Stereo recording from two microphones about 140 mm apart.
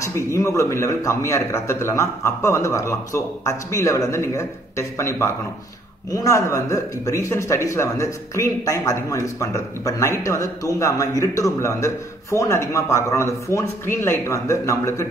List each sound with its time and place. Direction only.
0.0 s a man's voice: 20° left (ahead or behind)